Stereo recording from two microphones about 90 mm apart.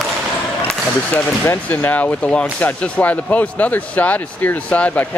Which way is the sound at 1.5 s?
20° left (ahead or behind).